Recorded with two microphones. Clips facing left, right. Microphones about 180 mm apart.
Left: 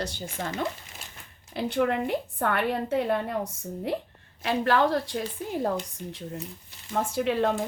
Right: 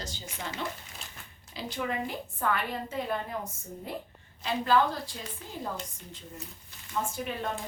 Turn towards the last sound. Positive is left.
turn(degrees=70)  # may be behind; listen again after turning